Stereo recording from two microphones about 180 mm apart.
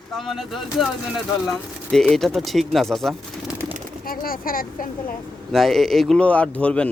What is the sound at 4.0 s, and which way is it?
Speech, 55° left (ahead or behind).